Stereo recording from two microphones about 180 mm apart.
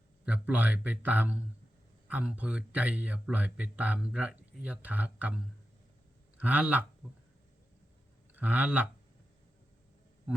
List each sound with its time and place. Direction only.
0.3 s a man's voice: 10° right (ahead or behind)
8.4 s speech: 10° right (ahead or behind)